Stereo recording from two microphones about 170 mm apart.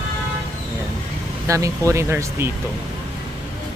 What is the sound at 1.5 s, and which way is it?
Speech, 20° right (ahead or behind).